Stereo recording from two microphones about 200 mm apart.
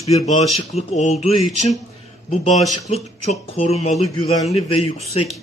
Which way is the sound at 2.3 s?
35° left (ahead or behind).